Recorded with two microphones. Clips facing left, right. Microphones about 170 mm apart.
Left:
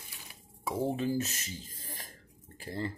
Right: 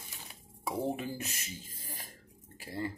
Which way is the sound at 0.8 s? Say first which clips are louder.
Left 5 dB; 15° right (ahead or behind).